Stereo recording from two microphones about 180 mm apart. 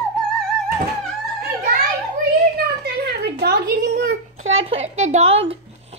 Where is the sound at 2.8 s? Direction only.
65° right (ahead or behind).